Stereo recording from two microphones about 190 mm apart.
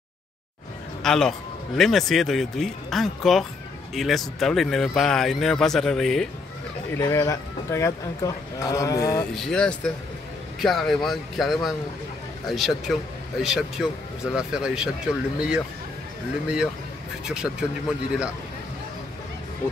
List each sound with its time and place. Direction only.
1.0 s speech: centre (ahead or behind)
6.9 s a man's voice: 15° left (ahead or behind)
9.3 s speech: centre (ahead or behind)
17.3 s speech: 5° right (ahead or behind)